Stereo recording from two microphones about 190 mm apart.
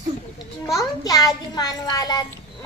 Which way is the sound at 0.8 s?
20° left (ahead or behind).